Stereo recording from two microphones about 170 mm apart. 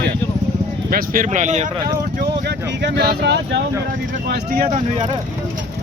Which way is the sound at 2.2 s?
75° right (ahead or behind).